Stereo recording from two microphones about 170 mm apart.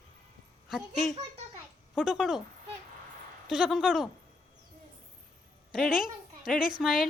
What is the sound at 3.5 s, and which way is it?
Speech, centre (ahead or behind).